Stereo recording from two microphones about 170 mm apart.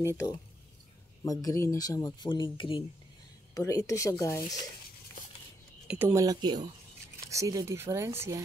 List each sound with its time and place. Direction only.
1.2 s speech: 20° left (ahead or behind)
3.5 s speech: 20° left (ahead or behind)
5.9 s speech: 15° right (ahead or behind)